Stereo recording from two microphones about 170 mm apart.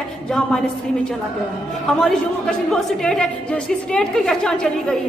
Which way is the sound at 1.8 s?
5° left (ahead or behind).